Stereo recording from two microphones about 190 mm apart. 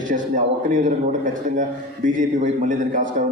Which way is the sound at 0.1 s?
45° right (ahead or behind).